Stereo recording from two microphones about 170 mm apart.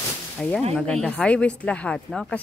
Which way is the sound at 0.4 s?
5° left (ahead or behind).